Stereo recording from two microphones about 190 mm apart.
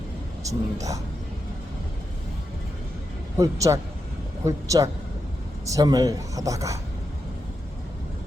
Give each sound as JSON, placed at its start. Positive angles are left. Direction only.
{"t": 0.4, "sound": "speech", "side_deg": -15}
{"t": 3.3, "sound": "speech", "side_deg": -15}